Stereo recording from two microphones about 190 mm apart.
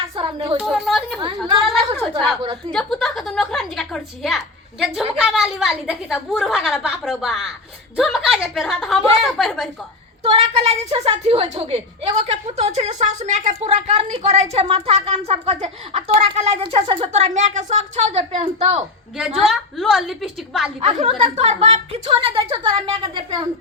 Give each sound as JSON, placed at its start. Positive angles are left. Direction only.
{"t": 0.2, "sound": "speech", "side_deg": -30}
{"t": 0.7, "sound": "a woman's voice", "side_deg": 0}
{"t": 2.4, "sound": "a woman's voice", "side_deg": -25}
{"t": 2.7, "sound": "a woman's voice", "side_deg": 0}
{"t": 10.3, "sound": "speech", "side_deg": -35}
{"t": 19.5, "sound": "a woman's voice", "side_deg": 0}
{"t": 20.8, "sound": "a woman's voice", "side_deg": -30}